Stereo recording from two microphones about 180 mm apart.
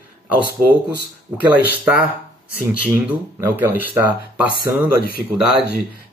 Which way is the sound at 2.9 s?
15° right (ahead or behind).